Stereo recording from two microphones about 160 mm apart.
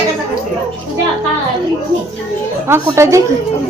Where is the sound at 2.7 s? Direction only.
15° right (ahead or behind).